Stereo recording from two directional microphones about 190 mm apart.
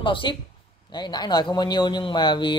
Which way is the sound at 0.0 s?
25° left (ahead or behind).